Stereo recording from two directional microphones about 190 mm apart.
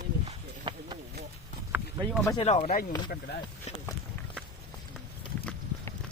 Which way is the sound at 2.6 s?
50° left (ahead or behind).